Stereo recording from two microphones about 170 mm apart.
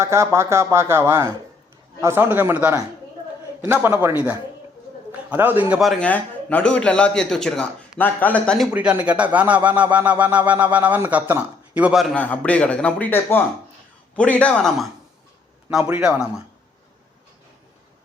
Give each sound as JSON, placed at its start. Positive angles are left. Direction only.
{"t": 0.0, "sound": "a man's voice", "side_deg": -15}